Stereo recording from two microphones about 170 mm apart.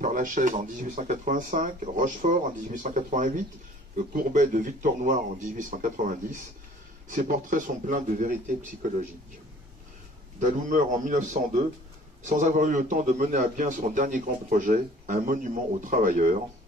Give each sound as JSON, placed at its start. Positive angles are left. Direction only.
{"t": 0.0, "sound": "a man's voice", "side_deg": -50}
{"t": 7.1, "sound": "a man's voice", "side_deg": -50}
{"t": 10.4, "sound": "a man's voice", "side_deg": -45}